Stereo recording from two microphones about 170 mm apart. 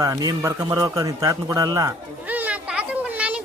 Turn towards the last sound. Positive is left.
turn(degrees=-5)  # may be behind; listen again after turning